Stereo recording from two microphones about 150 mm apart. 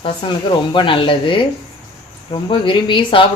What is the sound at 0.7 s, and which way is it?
Speech, 35° left (ahead or behind).